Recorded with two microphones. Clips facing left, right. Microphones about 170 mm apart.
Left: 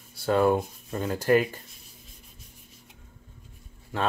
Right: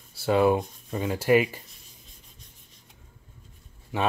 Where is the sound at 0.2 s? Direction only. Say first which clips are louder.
Right 1 dB; 5° right (ahead or behind).